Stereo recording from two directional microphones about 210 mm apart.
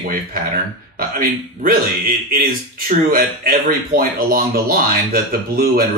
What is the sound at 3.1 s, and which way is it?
Speech, 45° right (ahead or behind).